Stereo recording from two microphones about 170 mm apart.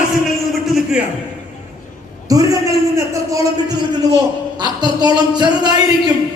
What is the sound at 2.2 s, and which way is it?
A man's voice, 20° right (ahead or behind).